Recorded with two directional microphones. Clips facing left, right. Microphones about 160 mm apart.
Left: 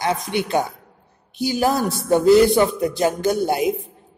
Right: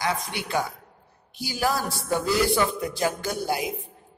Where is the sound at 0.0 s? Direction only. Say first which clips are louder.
Left 6 dB; 20° left (ahead or behind).